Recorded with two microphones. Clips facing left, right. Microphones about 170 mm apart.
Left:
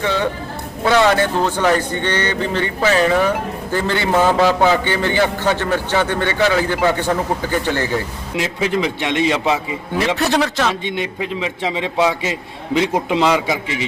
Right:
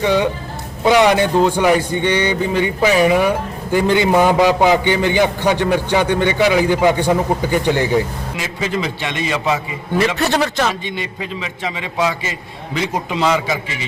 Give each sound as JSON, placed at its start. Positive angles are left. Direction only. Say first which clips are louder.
{"t": 0.0, "sound": "a man's voice", "louder": "right 3 dB", "side_deg": -15}
{"t": 8.8, "sound": "a man's voice", "louder": "left 4 dB", "side_deg": 20}
{"t": 10.2, "sound": "a man's voice", "louder": "even", "side_deg": 0}
{"t": 11.3, "sound": "a man's voice", "louder": "left 5 dB", "side_deg": 25}